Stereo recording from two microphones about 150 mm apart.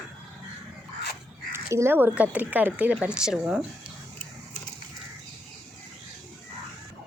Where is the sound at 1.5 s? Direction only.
15° right (ahead or behind).